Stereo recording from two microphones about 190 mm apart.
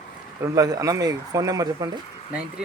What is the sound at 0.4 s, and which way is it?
Speech, 20° right (ahead or behind).